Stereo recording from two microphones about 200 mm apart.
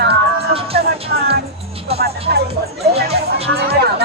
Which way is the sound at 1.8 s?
30° right (ahead or behind).